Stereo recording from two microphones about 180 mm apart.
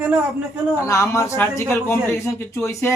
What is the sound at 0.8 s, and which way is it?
Speech, 15° left (ahead or behind).